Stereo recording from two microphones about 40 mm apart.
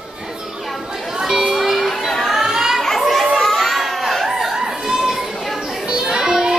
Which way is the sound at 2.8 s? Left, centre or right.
Centre.